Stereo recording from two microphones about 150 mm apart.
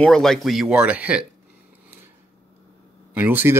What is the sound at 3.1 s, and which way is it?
Speech, 10° right (ahead or behind).